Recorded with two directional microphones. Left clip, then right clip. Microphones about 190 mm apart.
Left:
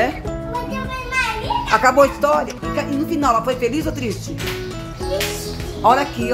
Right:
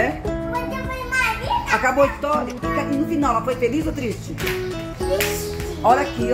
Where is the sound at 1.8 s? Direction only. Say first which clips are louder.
Left 4 dB; 20° left (ahead or behind).